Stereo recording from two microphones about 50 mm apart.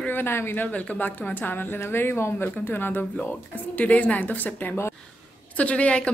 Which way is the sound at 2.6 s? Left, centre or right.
Left.